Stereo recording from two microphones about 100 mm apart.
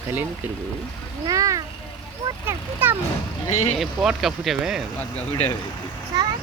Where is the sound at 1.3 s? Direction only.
35° right (ahead or behind).